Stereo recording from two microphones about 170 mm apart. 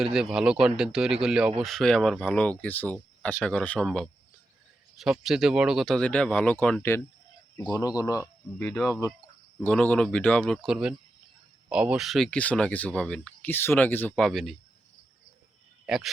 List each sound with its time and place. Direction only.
0.0 s speech: centre (ahead or behind)
7.7 s speech: 20° left (ahead or behind)
8.6 s speech: centre (ahead or behind)
14.3 s speech: centre (ahead or behind)